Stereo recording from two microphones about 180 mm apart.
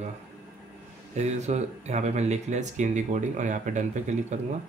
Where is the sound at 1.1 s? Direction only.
40° right (ahead or behind).